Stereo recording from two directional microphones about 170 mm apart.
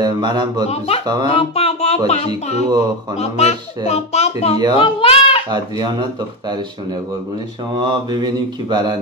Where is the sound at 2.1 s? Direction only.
40° left (ahead or behind).